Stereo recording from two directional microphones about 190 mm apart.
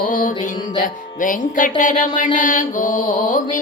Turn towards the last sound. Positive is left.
turn(degrees=45)  # may be behind; listen again after turning